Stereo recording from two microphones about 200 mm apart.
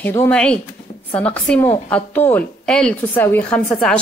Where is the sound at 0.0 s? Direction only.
10° left (ahead or behind).